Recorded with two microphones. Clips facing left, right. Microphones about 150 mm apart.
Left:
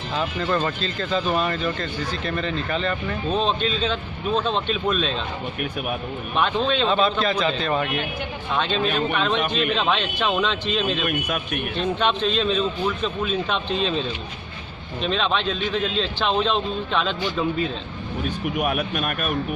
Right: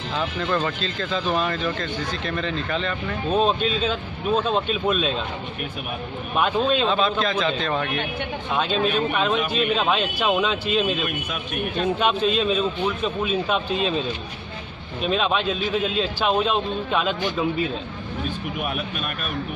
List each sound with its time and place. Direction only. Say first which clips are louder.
0.1 s speech: left 1 dB; 5° left (ahead or behind)
6.3 s a man's voice: right 1 dB; 5° right (ahead or behind)
8.5 s speech: right 1 dB; 5° right (ahead or behind)
11.1 s a man's voice: left 4 dB; 55° left (ahead or behind)
11.8 s a man's voice: right 1 dB; 5° right (ahead or behind)
18.6 s speech: left 6 dB; 50° left (ahead or behind)